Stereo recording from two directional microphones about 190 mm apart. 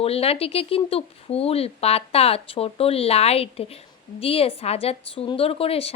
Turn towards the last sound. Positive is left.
turn(degrees=30)  # may be behind; listen again after turning